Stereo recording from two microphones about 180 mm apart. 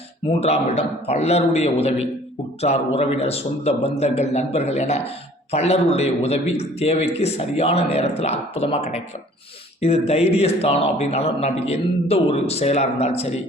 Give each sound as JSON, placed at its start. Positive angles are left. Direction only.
{"t": 0.3, "sound": "a man's voice", "side_deg": 35}